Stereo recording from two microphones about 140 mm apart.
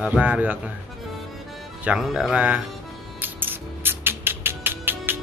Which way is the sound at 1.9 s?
5° right (ahead or behind).